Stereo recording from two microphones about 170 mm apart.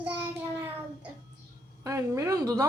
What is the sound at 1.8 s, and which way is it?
Speech, 15° right (ahead or behind).